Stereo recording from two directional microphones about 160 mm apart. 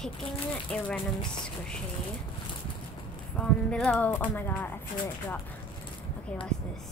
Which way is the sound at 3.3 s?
5° left (ahead or behind).